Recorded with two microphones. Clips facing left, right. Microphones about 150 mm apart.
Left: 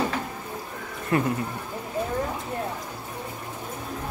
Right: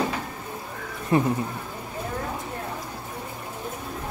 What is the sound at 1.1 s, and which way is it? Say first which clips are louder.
Speech: right 2 dB; 25° right (ahead or behind).